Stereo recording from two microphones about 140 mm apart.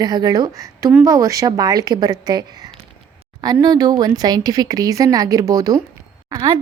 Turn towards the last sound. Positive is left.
turn(degrees=-35)  # may be behind; listen again after turning